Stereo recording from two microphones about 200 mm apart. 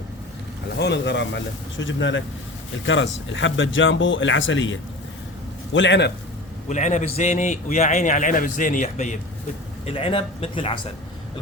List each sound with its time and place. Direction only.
0.8 s speech: 60° left (ahead or behind)
6.7 s a man's voice: 35° left (ahead or behind)